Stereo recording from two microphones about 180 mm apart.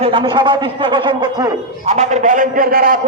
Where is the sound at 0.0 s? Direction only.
25° right (ahead or behind).